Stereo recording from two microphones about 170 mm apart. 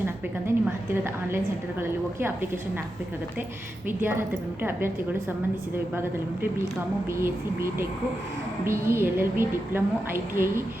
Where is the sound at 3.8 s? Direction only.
15° right (ahead or behind).